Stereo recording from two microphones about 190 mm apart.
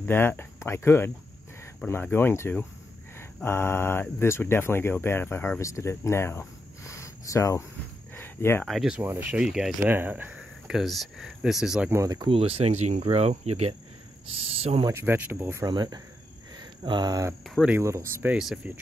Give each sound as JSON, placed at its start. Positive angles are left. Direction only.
{"t": 0.0, "sound": "speech", "side_deg": 10}
{"t": 8.1, "sound": "cricket", "side_deg": 10}
{"t": 8.6, "sound": "speech", "side_deg": 0}
{"t": 11.9, "sound": "speech", "side_deg": -15}
{"t": 14.9, "sound": "speech", "side_deg": -15}